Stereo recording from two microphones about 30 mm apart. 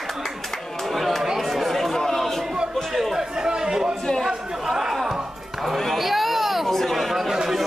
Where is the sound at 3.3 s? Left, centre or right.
Right.